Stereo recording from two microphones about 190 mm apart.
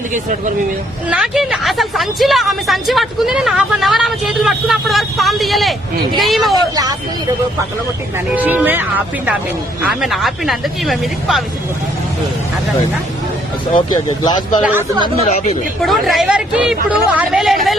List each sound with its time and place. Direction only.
0.1 s speech: 40° right (ahead or behind)
1.0 s speech: 5° right (ahead or behind)
8.4 s speech: 10° right (ahead or behind)
13.7 s speech: 25° left (ahead or behind)
14.6 s speech: 10° right (ahead or behind)
14.9 s speech: 25° right (ahead or behind)
15.8 s speech: centre (ahead or behind)